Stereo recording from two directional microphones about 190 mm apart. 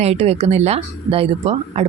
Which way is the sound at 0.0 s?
35° right (ahead or behind).